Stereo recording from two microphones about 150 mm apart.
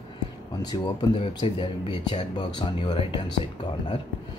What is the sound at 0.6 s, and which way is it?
Speech, 25° left (ahead or behind).